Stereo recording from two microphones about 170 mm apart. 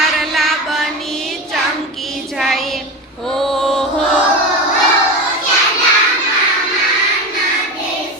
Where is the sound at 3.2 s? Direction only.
Centre (ahead or behind).